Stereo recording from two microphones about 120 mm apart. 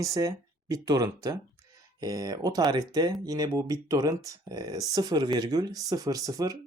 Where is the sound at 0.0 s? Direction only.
30° right (ahead or behind).